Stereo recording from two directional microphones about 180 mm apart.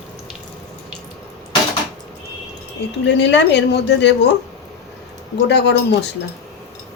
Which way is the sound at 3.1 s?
75° left (ahead or behind).